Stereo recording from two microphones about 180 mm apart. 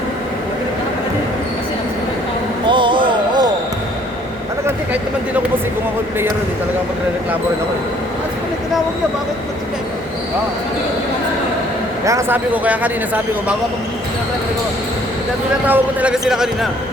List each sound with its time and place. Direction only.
2.6 s a sound: 25° right (ahead or behind)
12.0 s speech: 15° right (ahead or behind)
15.6 s a man's voice: 10° right (ahead or behind)